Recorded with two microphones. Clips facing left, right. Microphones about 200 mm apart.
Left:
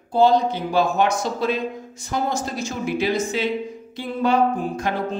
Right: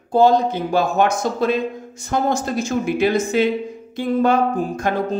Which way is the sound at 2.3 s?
50° right (ahead or behind).